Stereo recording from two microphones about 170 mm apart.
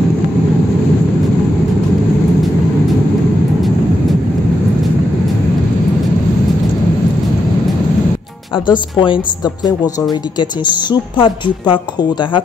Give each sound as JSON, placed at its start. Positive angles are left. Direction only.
{"t": 8.6, "sound": "speech", "side_deg": 30}
{"t": 10.9, "sound": "speech", "side_deg": 30}